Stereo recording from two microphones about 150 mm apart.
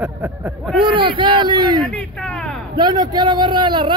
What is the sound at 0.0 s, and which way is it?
Speech, 10° right (ahead or behind).